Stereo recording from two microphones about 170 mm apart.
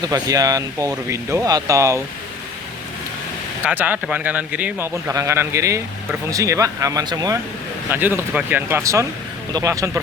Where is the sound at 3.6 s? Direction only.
10° right (ahead or behind).